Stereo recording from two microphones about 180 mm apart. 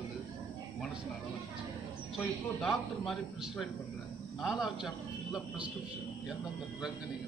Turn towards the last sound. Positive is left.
turn(degrees=0)  # may be behind; listen again after turning